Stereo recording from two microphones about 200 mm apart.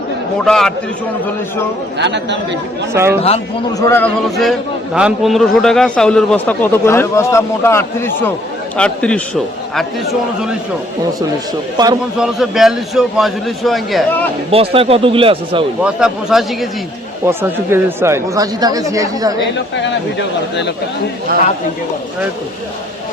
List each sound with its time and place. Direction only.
0.4 s a man's voice: centre (ahead or behind)
2.0 s speech: 60° right (ahead or behind)
2.9 s speech: 15° right (ahead or behind)
3.2 s a man's voice: 30° left (ahead or behind)
3.8 s a man's voice: 15° left (ahead or behind)
11.8 s a man's voice: 20° right (ahead or behind)
12.1 s a man's voice: centre (ahead or behind)
14.5 s a man's voice: 30° right (ahead or behind)
15.8 s a man's voice: 5° right (ahead or behind)
17.2 s speech: 15° right (ahead or behind)
19.5 s speech: 60° left (ahead or behind)